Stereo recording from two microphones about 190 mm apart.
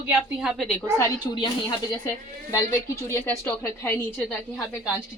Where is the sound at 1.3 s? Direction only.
25° left (ahead or behind).